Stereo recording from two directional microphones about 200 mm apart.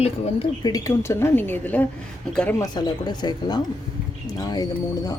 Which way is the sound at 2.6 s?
20° left (ahead or behind).